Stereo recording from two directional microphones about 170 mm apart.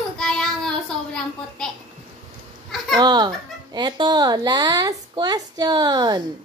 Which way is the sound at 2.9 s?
25° right (ahead or behind).